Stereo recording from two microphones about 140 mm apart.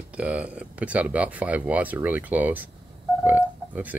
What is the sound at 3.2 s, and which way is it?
Burping, 10° right (ahead or behind).